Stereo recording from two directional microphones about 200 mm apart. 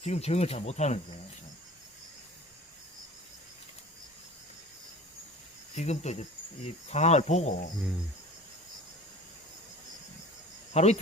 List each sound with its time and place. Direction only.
0.0 s speech: 30° left (ahead or behind)
5.7 s speech: 35° left (ahead or behind)
10.8 s speech: 35° left (ahead or behind)